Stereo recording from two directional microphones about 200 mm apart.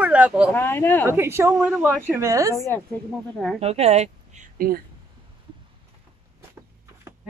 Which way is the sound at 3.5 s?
30° right (ahead or behind).